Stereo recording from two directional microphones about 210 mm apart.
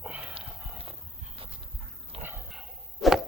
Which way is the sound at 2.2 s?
10° right (ahead or behind).